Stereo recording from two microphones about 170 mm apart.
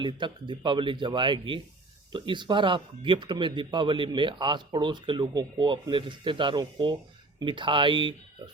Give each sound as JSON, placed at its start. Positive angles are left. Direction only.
{"t": 0.0, "sound": "speech", "side_deg": -30}